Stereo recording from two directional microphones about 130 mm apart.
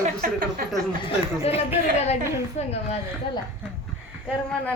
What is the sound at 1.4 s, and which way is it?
Speech, 50° left (ahead or behind).